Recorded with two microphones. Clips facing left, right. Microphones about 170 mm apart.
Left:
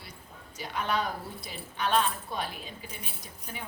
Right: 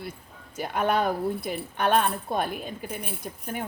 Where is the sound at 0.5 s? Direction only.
55° right (ahead or behind).